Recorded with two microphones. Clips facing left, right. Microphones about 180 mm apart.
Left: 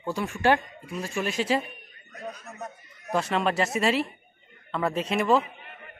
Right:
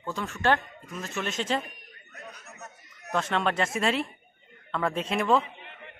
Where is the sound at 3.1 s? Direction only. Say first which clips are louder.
Left 2 dB; 5° left (ahead or behind).